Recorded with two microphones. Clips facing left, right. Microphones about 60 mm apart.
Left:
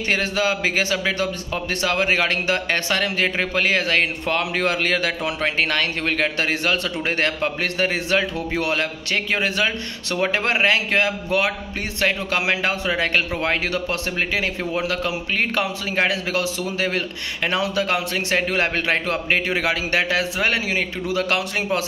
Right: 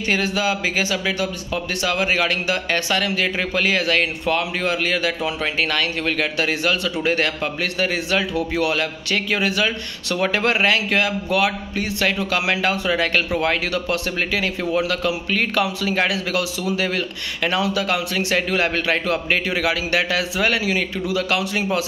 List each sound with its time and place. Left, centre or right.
0.1 s a man's voice: left
10.1 s speech: centre
10.4 s a man's voice: left